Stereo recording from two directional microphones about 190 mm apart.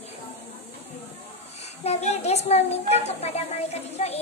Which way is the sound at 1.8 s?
35° left (ahead or behind).